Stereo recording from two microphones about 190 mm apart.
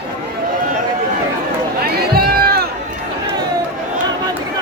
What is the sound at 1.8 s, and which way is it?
Run, 55° right (ahead or behind).